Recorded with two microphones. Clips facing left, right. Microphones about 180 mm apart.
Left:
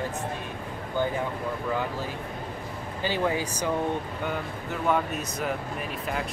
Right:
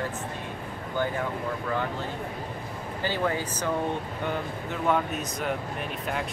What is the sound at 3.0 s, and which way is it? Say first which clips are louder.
Speech: left 1 dB; 15° left (ahead or behind).